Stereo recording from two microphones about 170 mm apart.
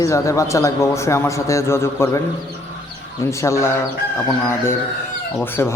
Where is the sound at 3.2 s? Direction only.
15° left (ahead or behind).